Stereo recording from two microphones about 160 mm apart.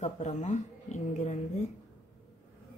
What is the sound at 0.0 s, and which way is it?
Speech, 45° left (ahead or behind).